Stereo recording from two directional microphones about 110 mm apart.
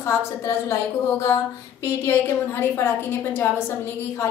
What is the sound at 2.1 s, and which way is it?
Speech, 20° left (ahead or behind).